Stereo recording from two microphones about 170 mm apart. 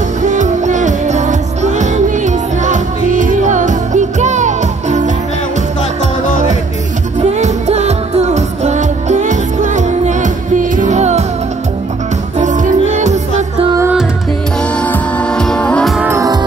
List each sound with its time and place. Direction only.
0.2 s music: 45° right (ahead or behind)
7.2 s music: 40° right (ahead or behind)
12.4 s music: 45° right (ahead or behind)
14.6 s music: 5° left (ahead or behind)
16.1 s music: 20° right (ahead or behind)